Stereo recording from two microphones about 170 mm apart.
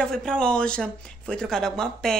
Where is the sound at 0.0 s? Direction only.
5° left (ahead or behind).